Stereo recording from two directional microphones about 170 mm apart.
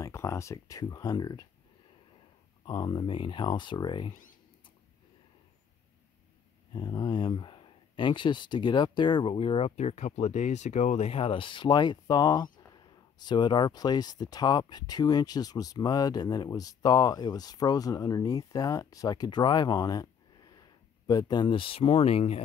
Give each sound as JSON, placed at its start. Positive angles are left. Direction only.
{"t": 0.0, "sound": "speech", "side_deg": 15}
{"t": 2.6, "sound": "speech", "side_deg": 25}
{"t": 6.7, "sound": "speech", "side_deg": 25}
{"t": 21.1, "sound": "speech", "side_deg": 25}